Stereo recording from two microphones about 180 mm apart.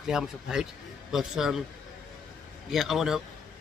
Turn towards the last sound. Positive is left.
turn(degrees=0)  # may be behind; listen again after turning